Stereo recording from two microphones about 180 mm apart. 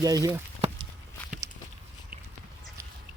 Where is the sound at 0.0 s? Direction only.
20° right (ahead or behind).